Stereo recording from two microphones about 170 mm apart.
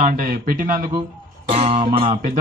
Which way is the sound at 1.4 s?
35° right (ahead or behind).